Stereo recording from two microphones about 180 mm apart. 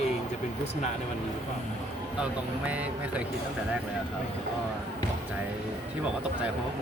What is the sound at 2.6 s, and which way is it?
Speech, 5° right (ahead or behind).